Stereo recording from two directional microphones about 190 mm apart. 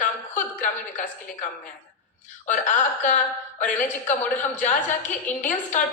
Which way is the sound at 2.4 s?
40° left (ahead or behind).